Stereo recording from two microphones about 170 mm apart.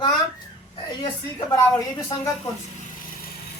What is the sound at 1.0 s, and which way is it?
Speech, 25° left (ahead or behind).